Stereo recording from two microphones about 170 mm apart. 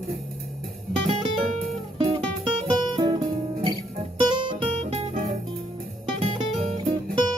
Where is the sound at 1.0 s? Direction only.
30° right (ahead or behind).